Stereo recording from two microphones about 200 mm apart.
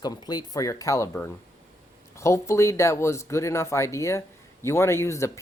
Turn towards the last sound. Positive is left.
turn(degrees=15)  # may be behind; listen again after turning